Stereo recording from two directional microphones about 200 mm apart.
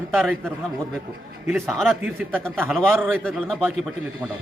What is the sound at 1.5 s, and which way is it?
A man's voice, centre (ahead or behind).